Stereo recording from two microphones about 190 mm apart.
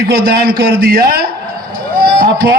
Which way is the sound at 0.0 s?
55° right (ahead or behind).